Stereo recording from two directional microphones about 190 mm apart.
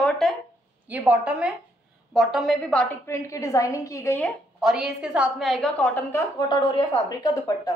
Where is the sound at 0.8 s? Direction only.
10° right (ahead or behind); by 6.2 s 10° left (ahead or behind).